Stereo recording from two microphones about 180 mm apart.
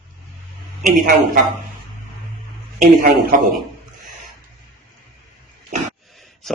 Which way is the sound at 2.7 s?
45° right (ahead or behind).